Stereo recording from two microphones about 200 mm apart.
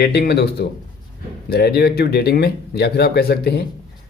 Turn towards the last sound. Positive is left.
turn(degrees=50)  # may be behind; listen again after turning